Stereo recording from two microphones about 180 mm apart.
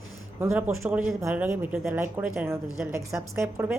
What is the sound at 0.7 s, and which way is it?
Speech, 10° right (ahead or behind).